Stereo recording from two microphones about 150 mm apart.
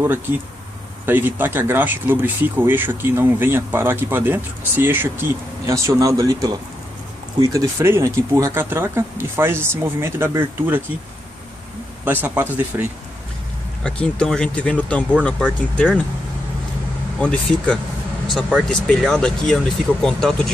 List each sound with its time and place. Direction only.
1.0 s speech: 15° right (ahead or behind)
12.0 s speech: 10° right (ahead or behind)
13.8 s speech: 5° left (ahead or behind)
17.2 s speech: 5° left (ahead or behind)